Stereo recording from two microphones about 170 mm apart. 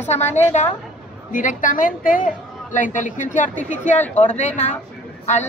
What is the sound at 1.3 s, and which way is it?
A woman's voice, 50° left (ahead or behind).